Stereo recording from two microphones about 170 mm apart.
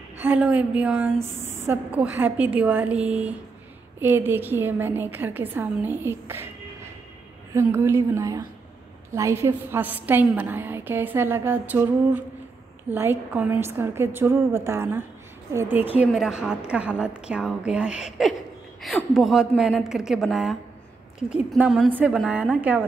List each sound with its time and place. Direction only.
0.2 s a woman's voice: 10° right (ahead or behind)
7.5 s a woman's voice: 15° right (ahead or behind)